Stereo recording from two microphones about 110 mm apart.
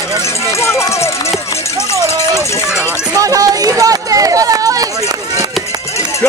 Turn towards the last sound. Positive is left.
turn(degrees=-35)  # may be behind; listen again after turning